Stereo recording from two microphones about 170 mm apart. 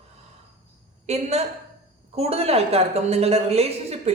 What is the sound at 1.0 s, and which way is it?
A woman's voice, 40° right (ahead or behind).